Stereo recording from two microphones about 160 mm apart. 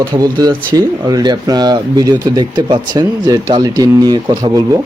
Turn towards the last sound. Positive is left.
turn(degrees=-25)  # may be behind; listen again after turning